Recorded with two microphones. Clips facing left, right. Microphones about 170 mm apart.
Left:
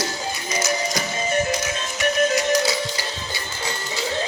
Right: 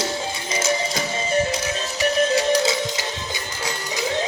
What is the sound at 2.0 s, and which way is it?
Music, 30° right (ahead or behind).